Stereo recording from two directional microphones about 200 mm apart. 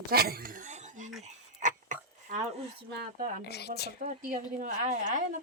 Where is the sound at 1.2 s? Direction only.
40° right (ahead or behind).